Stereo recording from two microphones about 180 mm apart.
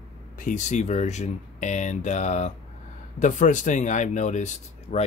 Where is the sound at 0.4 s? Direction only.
45° left (ahead or behind).